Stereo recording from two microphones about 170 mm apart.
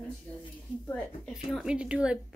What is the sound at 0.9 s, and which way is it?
Speech, centre (ahead or behind).